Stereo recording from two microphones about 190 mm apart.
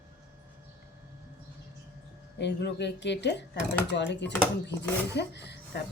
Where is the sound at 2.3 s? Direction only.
65° left (ahead or behind).